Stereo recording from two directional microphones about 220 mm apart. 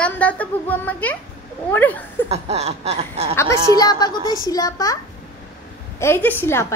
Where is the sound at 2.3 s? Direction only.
30° right (ahead or behind).